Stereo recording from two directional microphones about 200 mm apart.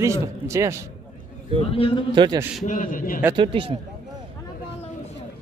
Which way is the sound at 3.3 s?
25° right (ahead or behind).